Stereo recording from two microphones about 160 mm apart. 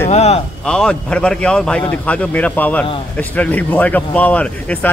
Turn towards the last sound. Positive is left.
turn(degrees=10)  # may be behind; listen again after turning